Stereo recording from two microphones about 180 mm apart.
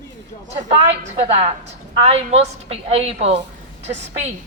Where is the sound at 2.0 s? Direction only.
35° right (ahead or behind).